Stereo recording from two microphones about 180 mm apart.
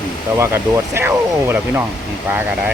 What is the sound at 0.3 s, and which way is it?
Speech, 15° right (ahead or behind).